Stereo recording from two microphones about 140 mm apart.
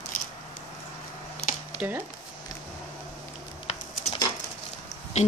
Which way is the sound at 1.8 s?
15° right (ahead or behind).